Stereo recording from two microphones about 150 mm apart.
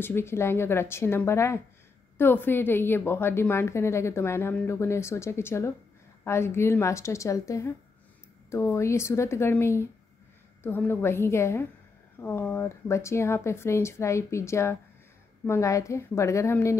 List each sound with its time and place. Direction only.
0.0 s a woman's voice: 15° left (ahead or behind)